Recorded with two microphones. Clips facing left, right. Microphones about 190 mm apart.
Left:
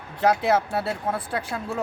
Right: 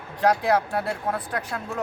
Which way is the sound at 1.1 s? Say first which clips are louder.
Left 1 dB; 10° left (ahead or behind).